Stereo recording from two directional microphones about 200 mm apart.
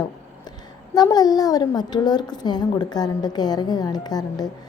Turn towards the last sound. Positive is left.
turn(degrees=20)  # may be behind; listen again after turning